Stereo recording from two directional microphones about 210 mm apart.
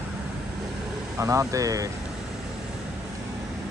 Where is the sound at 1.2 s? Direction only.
15° right (ahead or behind).